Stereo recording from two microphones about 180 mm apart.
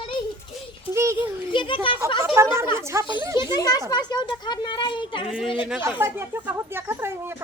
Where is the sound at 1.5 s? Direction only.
25° left (ahead or behind).